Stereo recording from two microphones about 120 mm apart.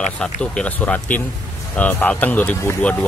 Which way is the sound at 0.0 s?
5° left (ahead or behind).